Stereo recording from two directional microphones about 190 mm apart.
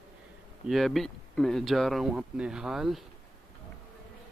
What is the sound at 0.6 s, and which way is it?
Speech, centre (ahead or behind).